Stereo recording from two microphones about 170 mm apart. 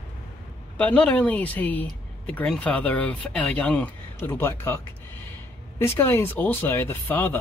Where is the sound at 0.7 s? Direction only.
10° left (ahead or behind).